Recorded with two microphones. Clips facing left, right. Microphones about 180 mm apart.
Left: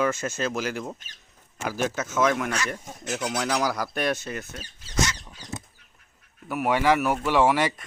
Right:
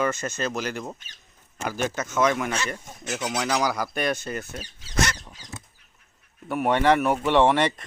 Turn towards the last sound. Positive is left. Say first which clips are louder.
# right 2 dB
turn(degrees=5)  # may be behind; listen again after turning